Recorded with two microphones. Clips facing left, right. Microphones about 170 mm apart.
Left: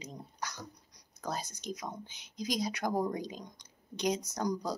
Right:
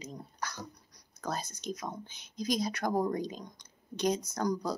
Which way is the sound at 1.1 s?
15° left (ahead or behind).